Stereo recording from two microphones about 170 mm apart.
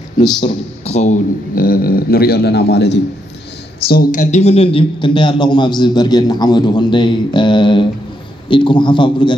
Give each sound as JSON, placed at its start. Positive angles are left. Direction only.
{"t": 0.8, "sound": "a man's voice", "side_deg": 40}
{"t": 3.9, "sound": "a man's voice", "side_deg": 55}